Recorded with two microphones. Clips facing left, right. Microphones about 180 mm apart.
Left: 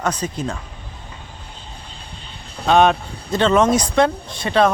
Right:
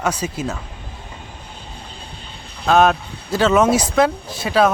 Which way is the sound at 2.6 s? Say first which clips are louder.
Even; centre (ahead or behind).